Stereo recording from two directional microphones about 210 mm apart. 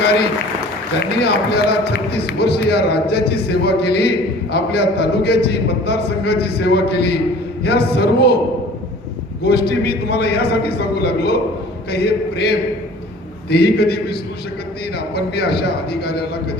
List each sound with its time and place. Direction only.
0.9 s speech: 50° left (ahead or behind)
9.4 s speech: 50° left (ahead or behind)